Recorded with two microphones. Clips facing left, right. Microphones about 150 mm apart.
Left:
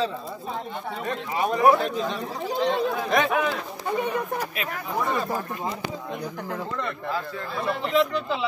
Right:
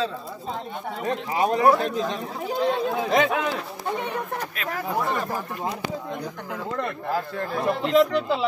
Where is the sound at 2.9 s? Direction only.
25° right (ahead or behind).